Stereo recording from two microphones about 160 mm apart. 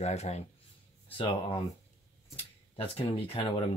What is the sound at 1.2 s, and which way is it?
Speech, 35° left (ahead or behind).